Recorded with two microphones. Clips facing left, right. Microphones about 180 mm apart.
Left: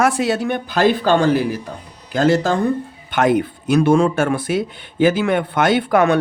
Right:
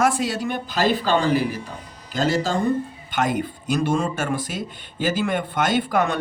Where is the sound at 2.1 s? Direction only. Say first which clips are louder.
Left 6 dB; 65° left (ahead or behind).